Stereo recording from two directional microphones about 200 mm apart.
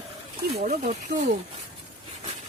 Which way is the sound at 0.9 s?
35° right (ahead or behind).